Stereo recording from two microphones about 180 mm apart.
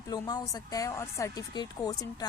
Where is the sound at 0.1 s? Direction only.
20° left (ahead or behind).